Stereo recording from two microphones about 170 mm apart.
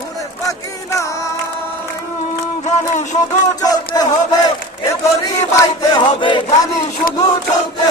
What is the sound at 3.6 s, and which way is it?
Speech, 20° left (ahead or behind).